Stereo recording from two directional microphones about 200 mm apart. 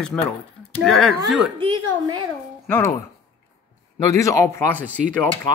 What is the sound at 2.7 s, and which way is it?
Speech, 15° left (ahead or behind).